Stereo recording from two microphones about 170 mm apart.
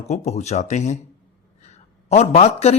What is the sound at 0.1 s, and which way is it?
A man's voice, 40° left (ahead or behind).